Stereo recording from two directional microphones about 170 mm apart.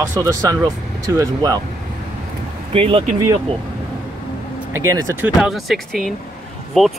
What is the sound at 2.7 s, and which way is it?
Speech, 35° right (ahead or behind).